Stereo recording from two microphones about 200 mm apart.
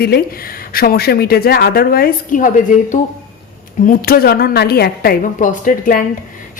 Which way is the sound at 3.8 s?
50° left (ahead or behind).